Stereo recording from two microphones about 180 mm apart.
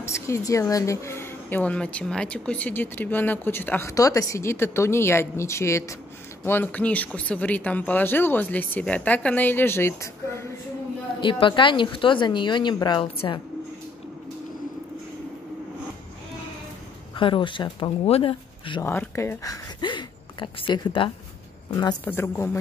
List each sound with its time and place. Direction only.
0.0 s speech: 15° left (ahead or behind)
11.1 s a woman's voice: 30° left (ahead or behind)
17.2 s a woman's voice: 25° left (ahead or behind)
18.8 s speech: 15° left (ahead or behind)
22.0 s speech: 15° left (ahead or behind)